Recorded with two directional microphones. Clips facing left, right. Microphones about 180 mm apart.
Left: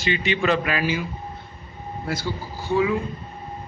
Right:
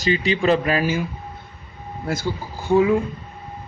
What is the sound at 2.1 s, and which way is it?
Speech, 50° right (ahead or behind).